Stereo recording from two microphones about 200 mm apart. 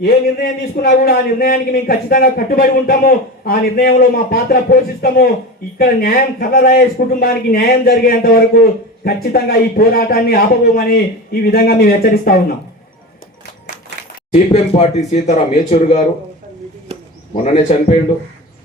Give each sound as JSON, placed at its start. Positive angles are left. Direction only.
{"t": 0.0, "sound": "a man's voice", "side_deg": 45}
{"t": 14.3, "sound": "speech", "side_deg": 35}
{"t": 17.3, "sound": "speech", "side_deg": 35}